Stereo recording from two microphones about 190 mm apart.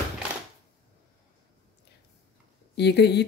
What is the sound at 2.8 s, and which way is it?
Speech, 60° left (ahead or behind).